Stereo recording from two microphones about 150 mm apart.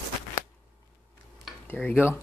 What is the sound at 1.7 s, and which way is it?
Speech, 10° left (ahead or behind).